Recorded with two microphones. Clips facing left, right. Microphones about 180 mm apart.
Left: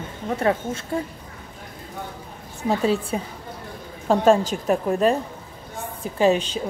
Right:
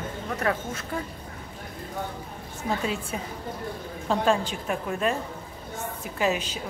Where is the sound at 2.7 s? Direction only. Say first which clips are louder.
Left 7 dB; 35° left (ahead or behind).